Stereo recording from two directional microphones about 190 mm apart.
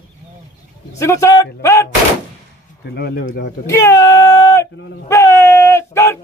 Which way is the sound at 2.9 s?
60° left (ahead or behind).